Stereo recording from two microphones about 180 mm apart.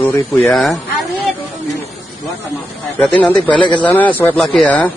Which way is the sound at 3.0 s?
5° left (ahead or behind).